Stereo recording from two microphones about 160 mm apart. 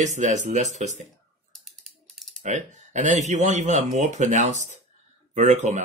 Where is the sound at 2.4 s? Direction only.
50° right (ahead or behind).